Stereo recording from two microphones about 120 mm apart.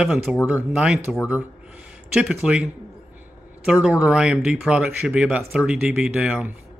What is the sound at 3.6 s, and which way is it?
Speech, 5° right (ahead or behind).